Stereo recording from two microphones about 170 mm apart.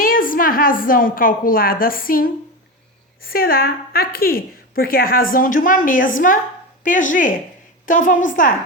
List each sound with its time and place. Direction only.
0.0 s a woman's voice: 55° left (ahead or behind)